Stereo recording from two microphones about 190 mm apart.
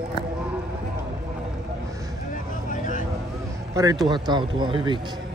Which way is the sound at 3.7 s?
20° right (ahead or behind).